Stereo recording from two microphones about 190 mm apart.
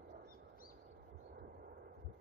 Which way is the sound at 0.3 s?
50° left (ahead or behind).